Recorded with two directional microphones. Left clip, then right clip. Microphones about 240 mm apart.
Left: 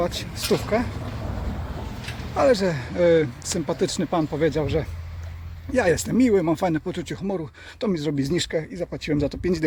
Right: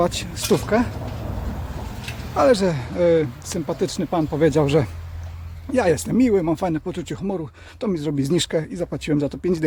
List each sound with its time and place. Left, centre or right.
0.0 s speech: right
2.3 s speech: centre
4.4 s speech: right
5.7 s speech: centre
8.3 s speech: right